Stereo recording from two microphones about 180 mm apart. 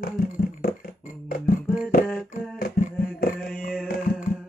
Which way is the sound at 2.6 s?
55° left (ahead or behind).